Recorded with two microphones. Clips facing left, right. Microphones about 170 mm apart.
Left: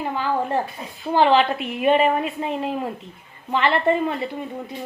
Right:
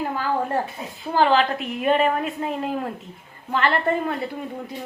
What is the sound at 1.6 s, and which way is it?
A woman's voice, 5° left (ahead or behind).